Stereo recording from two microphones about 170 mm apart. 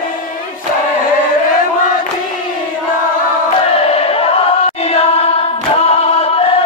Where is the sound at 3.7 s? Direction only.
35° left (ahead or behind).